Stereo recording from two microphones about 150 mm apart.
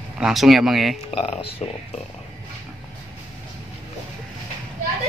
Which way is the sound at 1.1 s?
40° left (ahead or behind).